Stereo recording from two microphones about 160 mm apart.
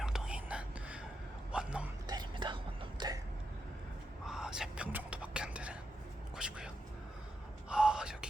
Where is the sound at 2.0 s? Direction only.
25° right (ahead or behind).